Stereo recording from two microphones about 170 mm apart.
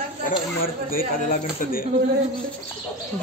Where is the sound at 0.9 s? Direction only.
55° left (ahead or behind).